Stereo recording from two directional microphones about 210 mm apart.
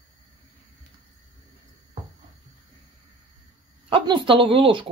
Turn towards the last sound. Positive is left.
turn(degrees=-25)  # may be behind; listen again after turning